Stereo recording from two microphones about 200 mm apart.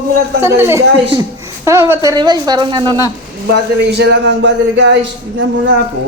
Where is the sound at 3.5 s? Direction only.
60° right (ahead or behind).